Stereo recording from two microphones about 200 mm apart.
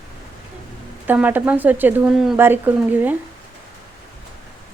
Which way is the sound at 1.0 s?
10° right (ahead or behind).